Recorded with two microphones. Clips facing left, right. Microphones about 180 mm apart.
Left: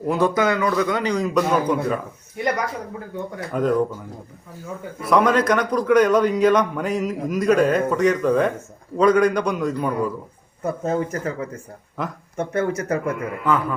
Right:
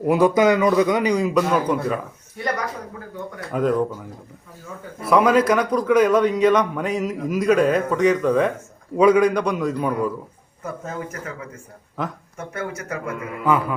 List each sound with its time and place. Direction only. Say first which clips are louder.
0.1 s speech: right 4 dB; 15° right (ahead or behind)
1.2 s a man's voice: even; 5° right (ahead or behind)
3.5 s a man's voice: even; centre (ahead or behind)
5.0 s a man's voice: right 1 dB; 5° right (ahead or behind)
10.6 s speech: left 7 dB; 30° left (ahead or behind)
12.0 s a man's voice: right 1 dB; centre (ahead or behind)
12.4 s speech: left 7 dB; 35° left (ahead or behind)
13.4 s speech: right 2 dB; 5° right (ahead or behind)